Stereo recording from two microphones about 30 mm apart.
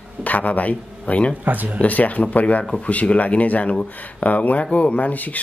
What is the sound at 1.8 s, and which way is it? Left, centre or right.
Speech, left.